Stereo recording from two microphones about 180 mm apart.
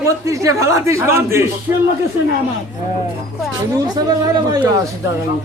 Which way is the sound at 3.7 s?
20° right (ahead or behind).